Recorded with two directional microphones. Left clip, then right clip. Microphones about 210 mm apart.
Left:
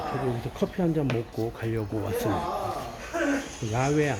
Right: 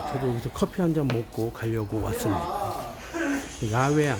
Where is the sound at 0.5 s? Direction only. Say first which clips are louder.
Right 1 dB; 20° right (ahead or behind).